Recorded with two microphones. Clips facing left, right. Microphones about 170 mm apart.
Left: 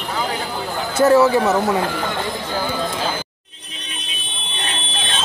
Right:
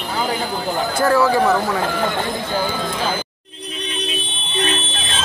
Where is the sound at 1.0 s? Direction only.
25° left (ahead or behind).